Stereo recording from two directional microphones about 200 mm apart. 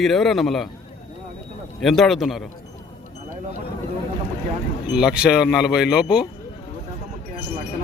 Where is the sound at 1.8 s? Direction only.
Centre (ahead or behind).